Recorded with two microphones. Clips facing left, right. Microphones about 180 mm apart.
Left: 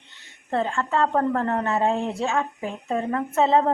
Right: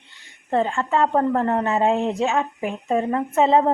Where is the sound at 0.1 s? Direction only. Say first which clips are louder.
Right 4 dB; 15° right (ahead or behind).